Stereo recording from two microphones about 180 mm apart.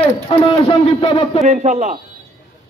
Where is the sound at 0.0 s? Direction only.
35° left (ahead or behind).